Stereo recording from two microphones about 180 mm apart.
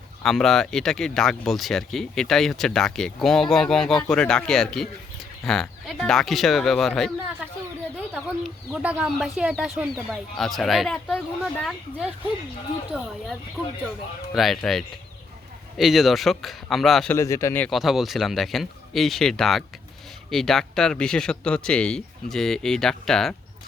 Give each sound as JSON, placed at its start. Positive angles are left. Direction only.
{"t": 0.2, "sound": "speech", "side_deg": 0}
{"t": 11.7, "sound": "speech", "side_deg": -5}
{"t": 14.3, "sound": "speech", "side_deg": 0}
{"t": 17.2, "sound": "speech", "side_deg": 15}
{"t": 17.7, "sound": "speech", "side_deg": 0}